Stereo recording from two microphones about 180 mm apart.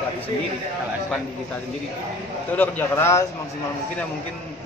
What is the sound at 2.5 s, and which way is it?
Speech, 10° left (ahead or behind).